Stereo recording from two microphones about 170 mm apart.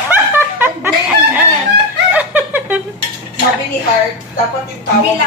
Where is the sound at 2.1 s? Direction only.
10° right (ahead or behind).